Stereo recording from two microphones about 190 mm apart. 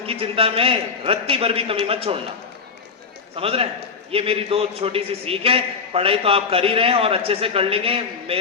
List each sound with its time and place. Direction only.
0.0 s a man's voice: 30° right (ahead or behind)
3.3 s a man's voice: 30° right (ahead or behind)